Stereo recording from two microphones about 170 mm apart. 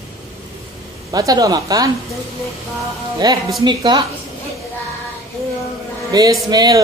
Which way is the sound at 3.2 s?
25° right (ahead or behind).